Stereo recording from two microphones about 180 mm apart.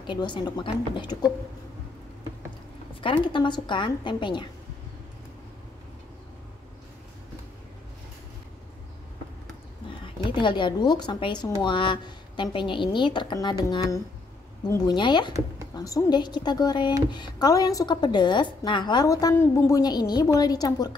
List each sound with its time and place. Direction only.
0.0 s a woman's voice: 25° left (ahead or behind)
3.0 s a woman's voice: 30° left (ahead or behind)
10.0 s a woman's voice: 25° left (ahead or behind)